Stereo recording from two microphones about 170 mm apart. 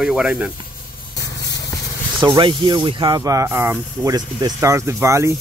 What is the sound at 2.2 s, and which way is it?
Speech, 30° right (ahead or behind).